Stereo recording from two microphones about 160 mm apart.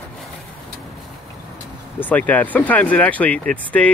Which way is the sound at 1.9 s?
10° left (ahead or behind).